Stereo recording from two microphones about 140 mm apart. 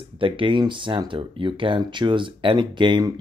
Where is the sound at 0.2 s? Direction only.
35° right (ahead or behind).